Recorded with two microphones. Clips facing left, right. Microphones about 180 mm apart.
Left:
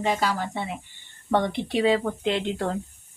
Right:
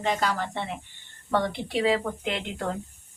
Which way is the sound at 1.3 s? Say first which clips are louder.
Left 3 dB; 20° left (ahead or behind).